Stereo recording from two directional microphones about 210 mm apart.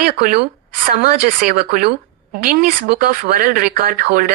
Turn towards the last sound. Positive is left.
turn(degrees=-45)  # may be behind; listen again after turning